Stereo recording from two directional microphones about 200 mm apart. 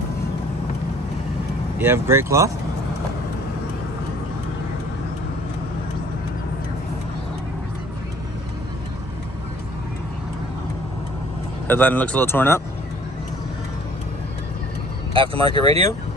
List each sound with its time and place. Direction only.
1.8 s speech: 10° right (ahead or behind)
11.6 s speech: 10° left (ahead or behind)
15.1 s speech: 25° right (ahead or behind)